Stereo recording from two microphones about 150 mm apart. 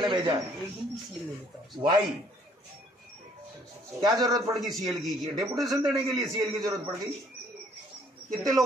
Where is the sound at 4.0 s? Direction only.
25° right (ahead or behind).